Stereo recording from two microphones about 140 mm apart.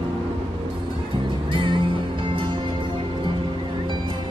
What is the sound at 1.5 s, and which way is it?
Music, 35° right (ahead or behind).